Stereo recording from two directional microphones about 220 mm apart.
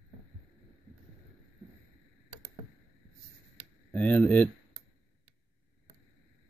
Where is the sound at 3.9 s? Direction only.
5° left (ahead or behind).